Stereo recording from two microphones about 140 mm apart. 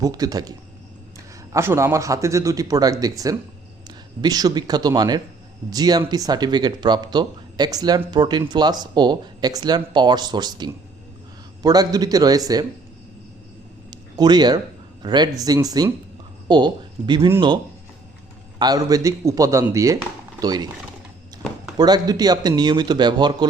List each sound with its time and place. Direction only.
0.0 s speech: 25° right (ahead or behind)
1.5 s speech: 20° right (ahead or behind)
13.9 s a sound: 30° right (ahead or behind)
15.0 s speech: 30° right (ahead or behind)
18.6 s speech: 25° right (ahead or behind)
21.8 s speech: 30° right (ahead or behind)